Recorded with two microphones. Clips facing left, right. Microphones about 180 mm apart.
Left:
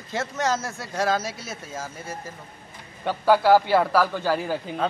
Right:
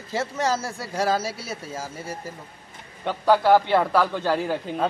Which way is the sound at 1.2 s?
35° right (ahead or behind).